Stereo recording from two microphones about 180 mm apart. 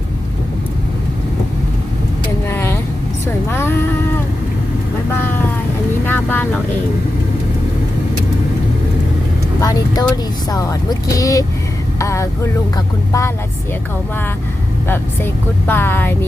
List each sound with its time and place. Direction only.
2.5 s vehicle: 10° left (ahead or behind)
3.5 s music: 10° left (ahead or behind)
6.1 s vehicle: 10° left (ahead or behind)
9.6 s speech: 20° left (ahead or behind)
11.9 s vehicle: 15° left (ahead or behind)
14.8 s vehicle: 10° left (ahead or behind)